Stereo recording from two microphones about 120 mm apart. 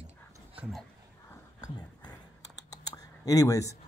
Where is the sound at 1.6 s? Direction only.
35° left (ahead or behind).